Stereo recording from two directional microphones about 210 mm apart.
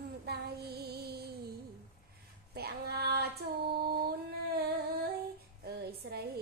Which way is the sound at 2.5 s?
50° right (ahead or behind).